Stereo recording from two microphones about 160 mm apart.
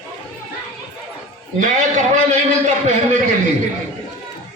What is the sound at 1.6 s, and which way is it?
Speech, 50° right (ahead or behind).